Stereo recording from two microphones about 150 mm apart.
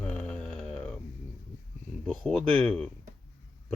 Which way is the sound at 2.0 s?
5° left (ahead or behind).